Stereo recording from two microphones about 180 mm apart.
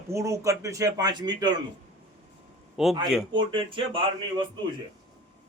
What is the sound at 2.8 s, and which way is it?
Speech, centre (ahead or behind).